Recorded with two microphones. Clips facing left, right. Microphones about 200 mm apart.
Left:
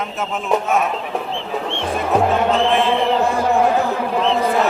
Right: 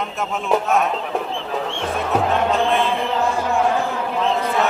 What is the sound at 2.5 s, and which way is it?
Speech, centre (ahead or behind).